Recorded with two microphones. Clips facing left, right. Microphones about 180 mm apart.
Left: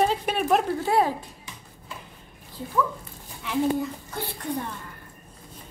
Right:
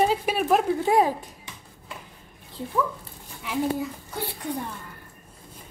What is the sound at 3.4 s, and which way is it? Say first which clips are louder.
Speech: left 2 dB; 5° right (ahead or behind).